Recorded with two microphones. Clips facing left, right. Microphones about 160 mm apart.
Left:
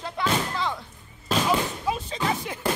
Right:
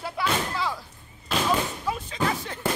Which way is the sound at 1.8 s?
15° left (ahead or behind).